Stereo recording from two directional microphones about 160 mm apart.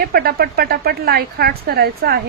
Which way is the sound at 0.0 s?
70° right (ahead or behind).